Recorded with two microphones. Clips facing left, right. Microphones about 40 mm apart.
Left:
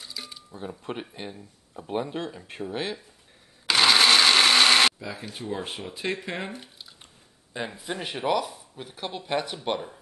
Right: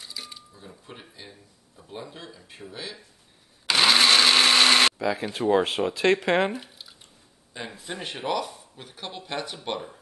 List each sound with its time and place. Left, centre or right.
0.0 s a sound: centre
0.8 s speech: left
3.6 s blender: centre
4.9 s speech: right
6.5 s squish: centre
7.5 s speech: centre